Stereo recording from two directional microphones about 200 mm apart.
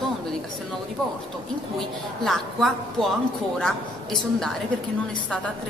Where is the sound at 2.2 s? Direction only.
Centre (ahead or behind).